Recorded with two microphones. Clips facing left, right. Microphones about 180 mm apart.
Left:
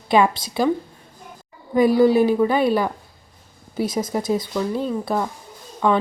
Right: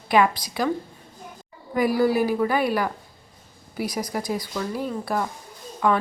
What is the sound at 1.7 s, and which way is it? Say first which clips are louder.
Speech: left 6 dB; 25° left (ahead or behind).